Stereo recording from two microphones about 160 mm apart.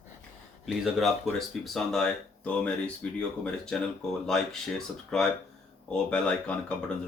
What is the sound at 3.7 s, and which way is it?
Speech, 5° left (ahead or behind).